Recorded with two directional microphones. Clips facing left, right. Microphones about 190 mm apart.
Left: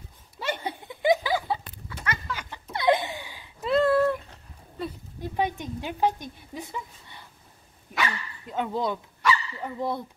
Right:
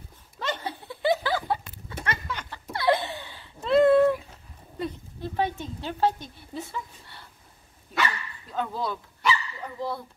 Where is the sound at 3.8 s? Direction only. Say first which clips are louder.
Right 4 dB; 20° right (ahead or behind).